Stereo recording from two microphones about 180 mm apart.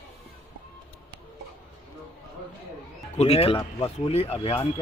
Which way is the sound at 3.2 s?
35° left (ahead or behind).